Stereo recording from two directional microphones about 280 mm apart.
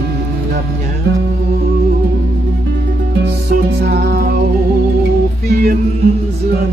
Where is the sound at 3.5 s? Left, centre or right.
Right.